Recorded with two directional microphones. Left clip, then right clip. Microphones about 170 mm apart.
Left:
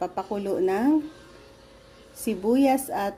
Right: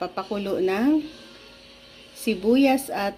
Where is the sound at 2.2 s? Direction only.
Centre (ahead or behind).